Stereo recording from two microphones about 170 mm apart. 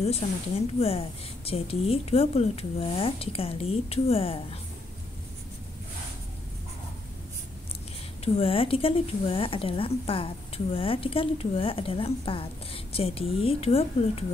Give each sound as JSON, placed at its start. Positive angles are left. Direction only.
{"t": 0.2, "sound": "a woman's voice", "side_deg": 35}
{"t": 8.4, "sound": "a woman's voice", "side_deg": 35}